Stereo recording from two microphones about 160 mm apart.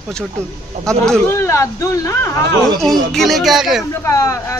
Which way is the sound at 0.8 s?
5° left (ahead or behind).